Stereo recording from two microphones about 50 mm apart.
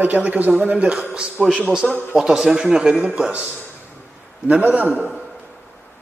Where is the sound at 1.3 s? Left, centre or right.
Centre.